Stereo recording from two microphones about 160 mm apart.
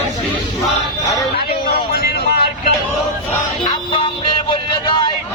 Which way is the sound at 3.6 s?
30° left (ahead or behind).